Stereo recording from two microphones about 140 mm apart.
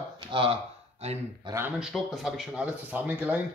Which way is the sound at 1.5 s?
35° right (ahead or behind).